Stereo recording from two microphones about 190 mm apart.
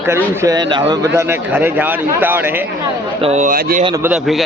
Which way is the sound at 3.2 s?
40° right (ahead or behind).